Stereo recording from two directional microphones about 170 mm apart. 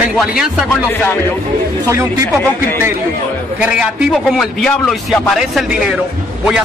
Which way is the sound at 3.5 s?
5° right (ahead or behind).